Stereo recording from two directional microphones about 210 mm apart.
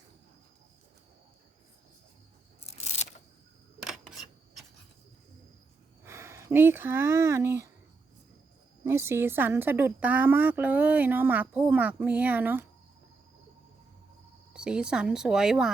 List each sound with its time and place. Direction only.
2.6 s a sound: 30° left (ahead or behind)
3.8 s camera: centre (ahead or behind)
6.1 s speech: 15° right (ahead or behind)
8.8 s a woman's voice: 10° right (ahead or behind)
14.5 s a woman's voice: 5° right (ahead or behind)